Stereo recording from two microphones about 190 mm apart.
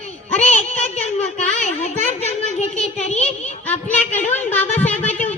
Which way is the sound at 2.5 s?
35° left (ahead or behind).